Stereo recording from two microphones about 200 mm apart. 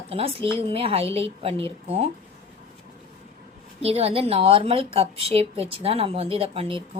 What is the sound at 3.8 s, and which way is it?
A woman's voice, 30° right (ahead or behind).